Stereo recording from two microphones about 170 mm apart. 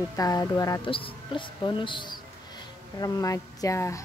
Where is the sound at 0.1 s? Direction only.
20° left (ahead or behind).